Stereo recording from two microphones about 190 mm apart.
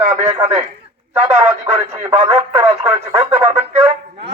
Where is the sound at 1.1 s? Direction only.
15° right (ahead or behind).